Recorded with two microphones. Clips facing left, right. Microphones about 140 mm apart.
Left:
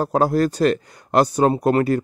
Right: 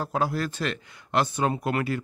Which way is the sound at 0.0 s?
40° left (ahead or behind).